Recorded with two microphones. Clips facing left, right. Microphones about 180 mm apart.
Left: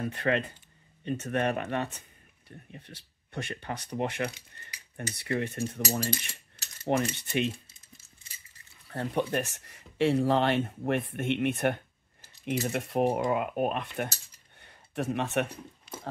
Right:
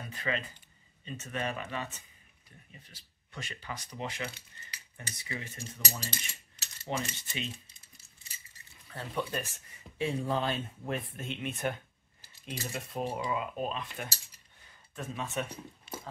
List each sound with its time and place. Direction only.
0.0 s speech: 60° left (ahead or behind)
4.9 s cutlery: 60° left (ahead or behind)
8.9 s speech: 65° left (ahead or behind)
14.6 s a sound: 65° left (ahead or behind)